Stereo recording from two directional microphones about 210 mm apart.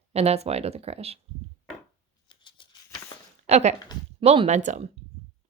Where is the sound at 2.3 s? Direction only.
25° left (ahead or behind).